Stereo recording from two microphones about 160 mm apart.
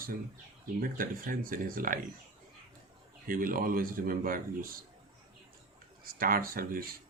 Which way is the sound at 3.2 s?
60° right (ahead or behind).